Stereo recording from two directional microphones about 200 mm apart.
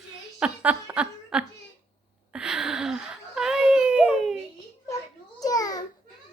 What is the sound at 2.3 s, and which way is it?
Baby cry, 5° right (ahead or behind).